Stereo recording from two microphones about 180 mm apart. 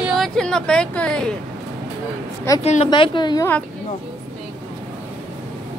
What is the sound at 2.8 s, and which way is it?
Speech, 25° left (ahead or behind).